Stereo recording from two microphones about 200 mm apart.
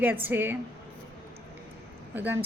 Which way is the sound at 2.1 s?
10° right (ahead or behind).